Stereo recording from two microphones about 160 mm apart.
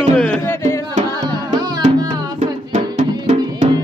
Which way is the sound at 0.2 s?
5° left (ahead or behind).